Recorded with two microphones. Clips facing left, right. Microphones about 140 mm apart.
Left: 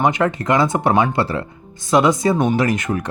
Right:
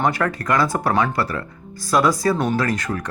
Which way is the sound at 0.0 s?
20° left (ahead or behind).